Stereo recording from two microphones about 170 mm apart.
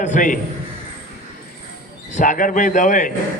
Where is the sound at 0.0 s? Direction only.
50° left (ahead or behind).